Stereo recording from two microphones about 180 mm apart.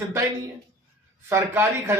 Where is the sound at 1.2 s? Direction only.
15° right (ahead or behind).